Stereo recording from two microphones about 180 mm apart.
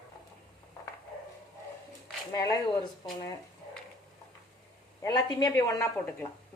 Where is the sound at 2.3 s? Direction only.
20° left (ahead or behind).